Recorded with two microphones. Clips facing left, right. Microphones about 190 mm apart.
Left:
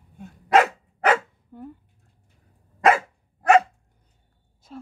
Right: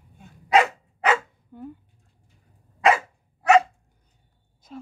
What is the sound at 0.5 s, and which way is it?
Dog, 50° left (ahead or behind).